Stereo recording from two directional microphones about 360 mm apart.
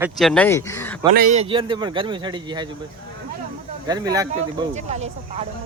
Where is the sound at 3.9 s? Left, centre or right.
Centre.